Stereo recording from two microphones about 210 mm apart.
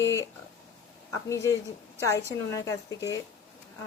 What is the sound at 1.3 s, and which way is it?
Speech, 15° left (ahead or behind).